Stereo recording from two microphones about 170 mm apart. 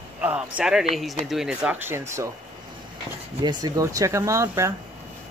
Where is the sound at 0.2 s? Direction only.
10° right (ahead or behind).